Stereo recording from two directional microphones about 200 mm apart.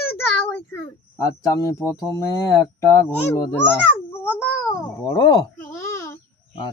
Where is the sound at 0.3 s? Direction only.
5° left (ahead or behind).